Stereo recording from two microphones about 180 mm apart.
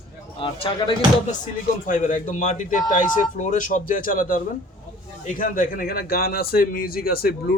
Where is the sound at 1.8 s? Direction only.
45° left (ahead or behind).